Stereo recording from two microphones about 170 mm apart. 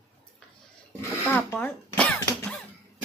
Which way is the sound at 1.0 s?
10° left (ahead or behind).